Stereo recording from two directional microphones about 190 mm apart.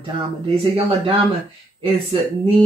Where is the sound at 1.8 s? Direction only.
30° right (ahead or behind).